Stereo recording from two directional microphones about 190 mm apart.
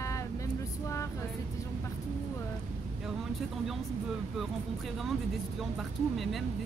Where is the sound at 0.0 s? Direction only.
15° left (ahead or behind).